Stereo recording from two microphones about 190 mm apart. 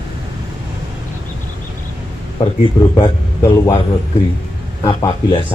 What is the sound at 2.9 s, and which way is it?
Speech, 25° left (ahead or behind).